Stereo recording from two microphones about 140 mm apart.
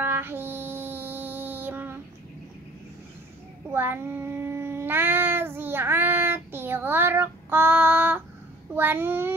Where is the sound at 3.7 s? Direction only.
15° right (ahead or behind).